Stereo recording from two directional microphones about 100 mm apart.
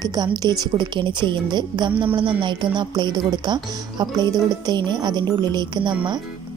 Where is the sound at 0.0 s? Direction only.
40° right (ahead or behind).